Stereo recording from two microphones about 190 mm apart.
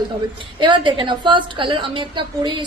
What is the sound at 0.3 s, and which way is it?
A woman's voice, 25° right (ahead or behind).